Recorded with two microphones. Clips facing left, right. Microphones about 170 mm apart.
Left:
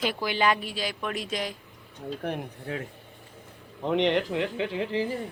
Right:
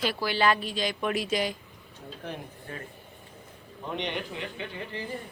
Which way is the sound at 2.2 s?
70° left (ahead or behind).